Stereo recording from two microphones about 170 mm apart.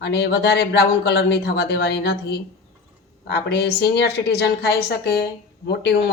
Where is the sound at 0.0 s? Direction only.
75° left (ahead or behind).